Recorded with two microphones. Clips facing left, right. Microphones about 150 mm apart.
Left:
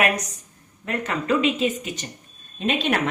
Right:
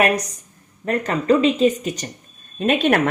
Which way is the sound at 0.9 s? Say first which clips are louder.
Right 6 dB; 35° right (ahead or behind).